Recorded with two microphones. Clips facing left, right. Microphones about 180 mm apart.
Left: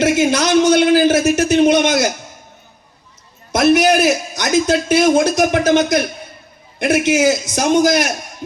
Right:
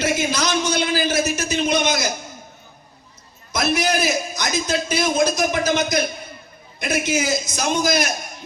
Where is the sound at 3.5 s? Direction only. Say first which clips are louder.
Left 9 dB; 75° left (ahead or behind).